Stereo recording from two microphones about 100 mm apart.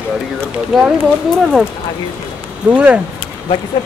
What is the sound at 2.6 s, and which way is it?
Speech, 15° right (ahead or behind).